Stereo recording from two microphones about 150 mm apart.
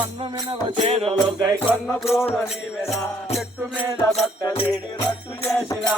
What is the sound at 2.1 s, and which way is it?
Music, 15° left (ahead or behind).